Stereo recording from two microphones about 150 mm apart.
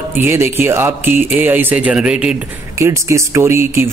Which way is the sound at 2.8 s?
20° right (ahead or behind).